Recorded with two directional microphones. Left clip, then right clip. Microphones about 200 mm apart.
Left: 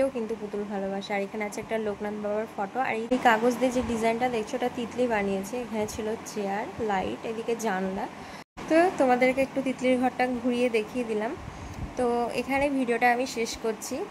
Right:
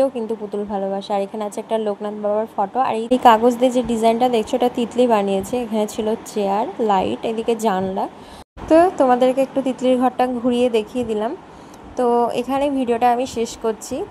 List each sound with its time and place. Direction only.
0.9 s speech: 20° right (ahead or behind)
8.6 s speech: 20° right (ahead or behind)